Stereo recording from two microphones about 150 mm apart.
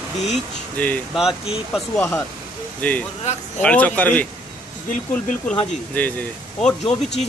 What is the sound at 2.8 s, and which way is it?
Speech, 10° left (ahead or behind).